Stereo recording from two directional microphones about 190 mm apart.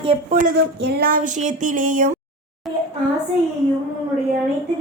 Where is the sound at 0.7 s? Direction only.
60° right (ahead or behind); by 2.2 s 45° right (ahead or behind).